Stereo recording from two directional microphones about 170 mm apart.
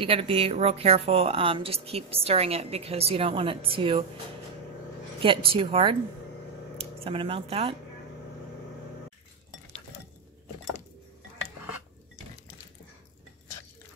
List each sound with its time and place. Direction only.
0.0 s a woman's voice: 35° right (ahead or behind)
5.2 s a woman's voice: 30° right (ahead or behind)
7.1 s a woman's voice: 35° right (ahead or behind)